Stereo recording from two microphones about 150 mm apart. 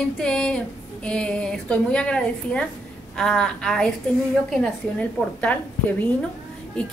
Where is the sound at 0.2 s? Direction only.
5° left (ahead or behind).